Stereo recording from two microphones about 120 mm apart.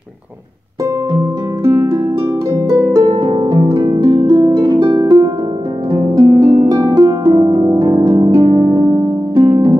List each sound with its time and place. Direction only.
1.1 s music: 25° right (ahead or behind)
2.7 s harp: 35° right (ahead or behind)
6.2 s music: 30° right (ahead or behind)
6.5 s harp: 25° right (ahead or behind)
9.5 s harp: 45° right (ahead or behind)